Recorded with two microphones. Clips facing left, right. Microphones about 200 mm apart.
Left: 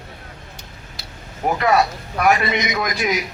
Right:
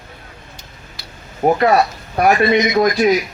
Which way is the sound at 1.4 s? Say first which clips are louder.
Right 4 dB; 35° right (ahead or behind).